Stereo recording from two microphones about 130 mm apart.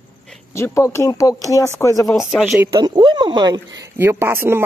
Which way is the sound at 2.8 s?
35° right (ahead or behind).